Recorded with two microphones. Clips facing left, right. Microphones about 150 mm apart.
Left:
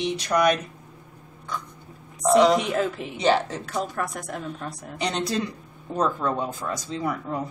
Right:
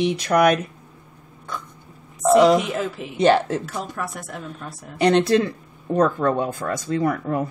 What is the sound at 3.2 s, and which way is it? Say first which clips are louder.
Speech: right 5 dB; 50° right (ahead or behind).